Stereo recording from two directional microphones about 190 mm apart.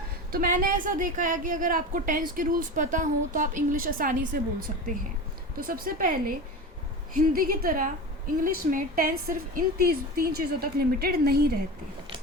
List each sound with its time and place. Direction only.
0.3 s a woman's voice: 45° right (ahead or behind)
7.3 s a woman's voice: 50° right (ahead or behind)